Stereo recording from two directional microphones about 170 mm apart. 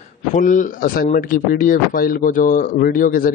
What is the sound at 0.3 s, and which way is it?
A man's voice, 50° left (ahead or behind).